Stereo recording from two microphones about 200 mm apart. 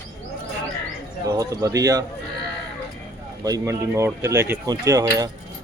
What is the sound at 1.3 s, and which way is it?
Speech, 15° right (ahead or behind).